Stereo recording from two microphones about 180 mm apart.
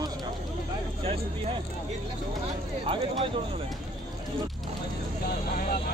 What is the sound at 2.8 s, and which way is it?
Speech, 30° right (ahead or behind).